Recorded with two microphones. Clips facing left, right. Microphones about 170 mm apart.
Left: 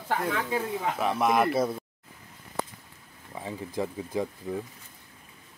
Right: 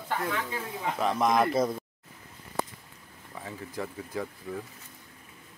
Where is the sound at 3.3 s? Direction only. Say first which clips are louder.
Left 4 dB; 20° left (ahead or behind).